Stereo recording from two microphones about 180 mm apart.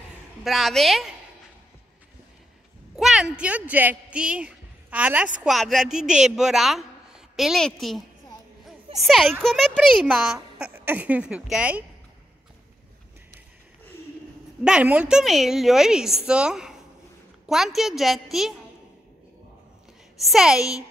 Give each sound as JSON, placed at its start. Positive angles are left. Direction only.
{"t": 0.4, "sound": "a woman's voice", "side_deg": 0}
{"t": 3.0, "sound": "a woman's voice", "side_deg": -5}
{"t": 14.6, "sound": "a woman's voice", "side_deg": -5}
{"t": 20.2, "sound": "a woman's voice", "side_deg": 0}